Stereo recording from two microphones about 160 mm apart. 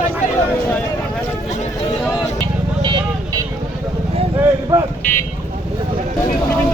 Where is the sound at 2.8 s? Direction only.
25° right (ahead or behind).